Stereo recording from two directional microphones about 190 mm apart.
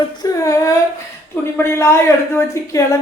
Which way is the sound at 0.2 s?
15° left (ahead or behind).